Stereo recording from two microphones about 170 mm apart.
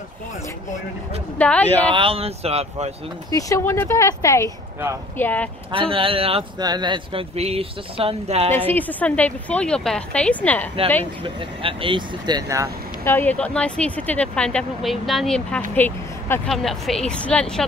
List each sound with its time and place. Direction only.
1.4 s speech: 10° left (ahead or behind)
2.0 s speech: 35° right (ahead or behind)
3.3 s speech: 20° left (ahead or behind)
5.7 s speech: 30° right (ahead or behind)
8.5 s speech: 10° left (ahead or behind)
11.2 s speech: 30° right (ahead or behind)
13.0 s speech: 10° left (ahead or behind)